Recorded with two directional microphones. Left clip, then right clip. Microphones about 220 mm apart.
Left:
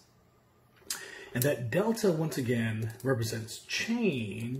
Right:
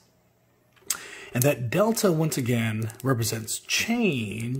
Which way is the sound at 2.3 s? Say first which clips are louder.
Right 4 dB; 45° right (ahead or behind).